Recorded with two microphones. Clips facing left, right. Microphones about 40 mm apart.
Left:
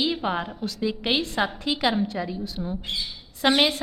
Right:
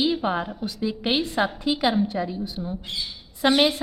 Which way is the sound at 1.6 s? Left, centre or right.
Centre.